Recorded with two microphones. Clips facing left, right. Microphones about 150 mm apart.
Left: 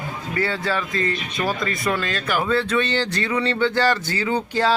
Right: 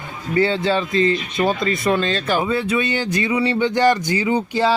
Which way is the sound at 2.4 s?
10° right (ahead or behind).